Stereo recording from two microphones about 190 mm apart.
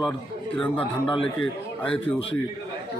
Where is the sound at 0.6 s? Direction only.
5° left (ahead or behind).